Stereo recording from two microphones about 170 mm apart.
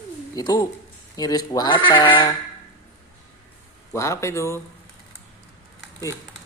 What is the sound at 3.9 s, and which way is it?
Speech, 15° left (ahead or behind).